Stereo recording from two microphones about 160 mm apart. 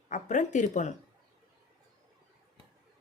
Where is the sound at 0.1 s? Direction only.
50° left (ahead or behind).